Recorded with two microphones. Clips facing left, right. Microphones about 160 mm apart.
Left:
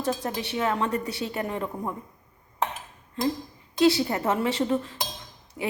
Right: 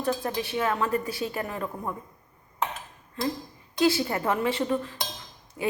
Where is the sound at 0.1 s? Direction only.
25° left (ahead or behind).